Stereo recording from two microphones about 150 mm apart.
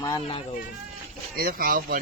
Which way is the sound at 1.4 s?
75° right (ahead or behind).